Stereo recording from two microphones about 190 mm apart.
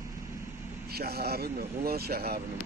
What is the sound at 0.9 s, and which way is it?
Speech, 55° right (ahead or behind).